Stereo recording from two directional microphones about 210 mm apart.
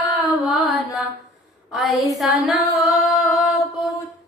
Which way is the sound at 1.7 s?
Centre (ahead or behind).